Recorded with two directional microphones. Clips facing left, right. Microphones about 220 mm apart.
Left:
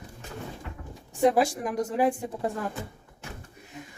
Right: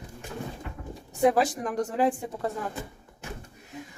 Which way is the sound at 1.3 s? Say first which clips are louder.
Left 1 dB; 10° left (ahead or behind).